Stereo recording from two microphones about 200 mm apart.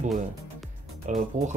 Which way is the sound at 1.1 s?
40° right (ahead or behind).